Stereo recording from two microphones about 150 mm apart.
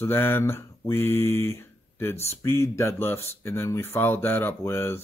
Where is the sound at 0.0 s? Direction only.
15° left (ahead or behind).